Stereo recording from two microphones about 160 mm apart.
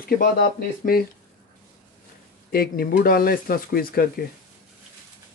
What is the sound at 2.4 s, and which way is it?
Speech, 70° left (ahead or behind).